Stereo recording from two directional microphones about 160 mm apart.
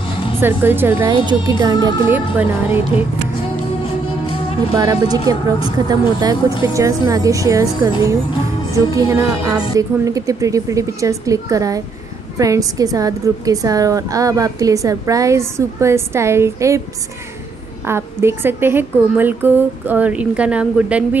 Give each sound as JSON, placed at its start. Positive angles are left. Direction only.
{"t": 0.4, "sound": "a woman's voice", "side_deg": -10}
{"t": 1.0, "sound": "a woman's voice", "side_deg": -30}
{"t": 2.0, "sound": "a woman's voice", "side_deg": -10}
{"t": 4.7, "sound": "a woman's voice", "side_deg": -25}
{"t": 17.8, "sound": "a woman's voice", "side_deg": -15}